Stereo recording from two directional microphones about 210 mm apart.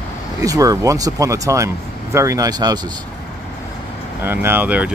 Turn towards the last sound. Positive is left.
turn(degrees=-5)  # may be behind; listen again after turning